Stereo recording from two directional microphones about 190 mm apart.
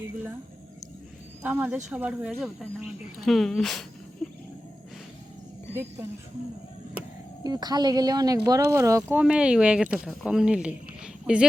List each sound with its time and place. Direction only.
1.4 s speech: 10° right (ahead or behind)
7.4 s a woman's voice: 20° right (ahead or behind); by 11.4 s 5° right (ahead or behind)